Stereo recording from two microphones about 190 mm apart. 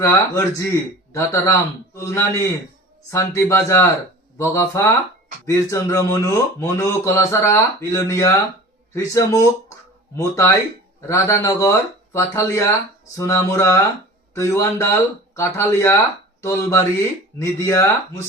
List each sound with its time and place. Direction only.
0.0 s speech: 15° left (ahead or behind)